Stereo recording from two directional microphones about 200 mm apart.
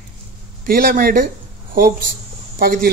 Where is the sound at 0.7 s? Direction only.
45° right (ahead or behind).